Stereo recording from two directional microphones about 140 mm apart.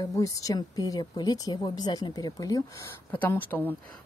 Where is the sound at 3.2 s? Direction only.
15° left (ahead or behind).